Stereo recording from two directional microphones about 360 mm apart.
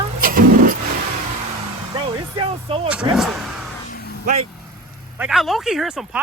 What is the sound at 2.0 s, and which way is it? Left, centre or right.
Speech, centre.